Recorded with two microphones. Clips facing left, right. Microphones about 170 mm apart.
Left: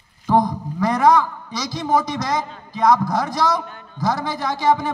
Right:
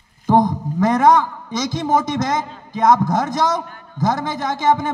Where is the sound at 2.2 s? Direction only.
20° right (ahead or behind).